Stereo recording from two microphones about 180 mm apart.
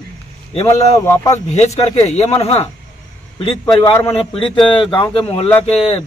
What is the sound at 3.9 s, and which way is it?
Speech, 15° left (ahead or behind).